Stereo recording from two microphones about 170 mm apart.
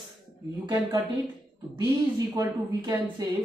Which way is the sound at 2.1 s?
25° right (ahead or behind).